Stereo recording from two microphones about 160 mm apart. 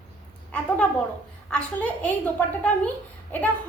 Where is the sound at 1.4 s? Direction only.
10° left (ahead or behind).